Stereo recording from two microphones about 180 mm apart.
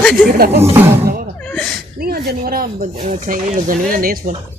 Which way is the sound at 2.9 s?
40° right (ahead or behind).